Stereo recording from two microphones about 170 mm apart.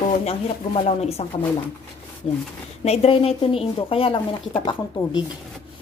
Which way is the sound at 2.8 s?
40° left (ahead or behind).